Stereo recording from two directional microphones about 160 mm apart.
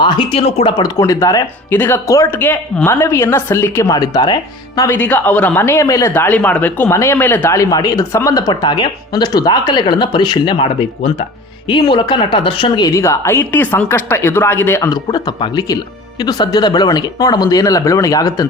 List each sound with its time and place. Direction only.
0.0 s speech: 30° left (ahead or behind)
0.8 s speech: 20° left (ahead or behind)
4.8 s speech: 10° left (ahead or behind); by 12.9 s 30° left (ahead or behind)
12.9 s speech: 15° left (ahead or behind)